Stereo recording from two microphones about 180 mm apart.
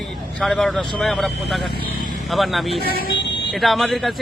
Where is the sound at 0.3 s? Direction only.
Centre (ahead or behind).